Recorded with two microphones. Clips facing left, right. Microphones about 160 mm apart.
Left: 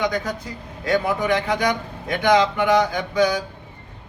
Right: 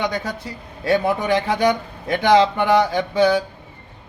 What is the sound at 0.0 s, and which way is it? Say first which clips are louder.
A man's voice: left 1 dB; 30° right (ahead or behind).